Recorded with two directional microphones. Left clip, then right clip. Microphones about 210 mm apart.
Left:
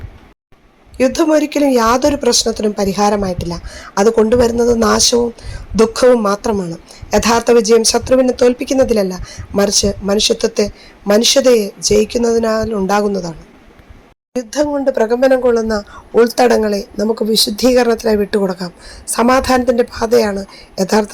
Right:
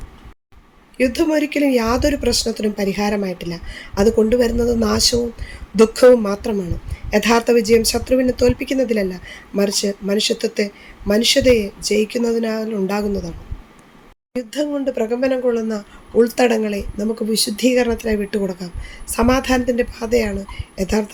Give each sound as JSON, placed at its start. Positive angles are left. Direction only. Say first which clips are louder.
{"t": 1.3, "sound": "a woman's voice", "louder": "left 6 dB", "side_deg": 65}
{"t": 1.5, "sound": "speech", "louder": "left 5 dB", "side_deg": 15}
{"t": 14.5, "sound": "a woman's voice", "louder": "left 7 dB", "side_deg": 20}